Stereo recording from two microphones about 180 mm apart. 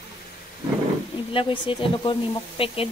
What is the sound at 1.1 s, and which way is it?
Speech, 30° left (ahead or behind).